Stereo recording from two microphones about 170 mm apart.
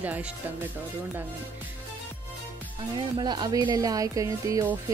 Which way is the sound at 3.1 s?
25° right (ahead or behind).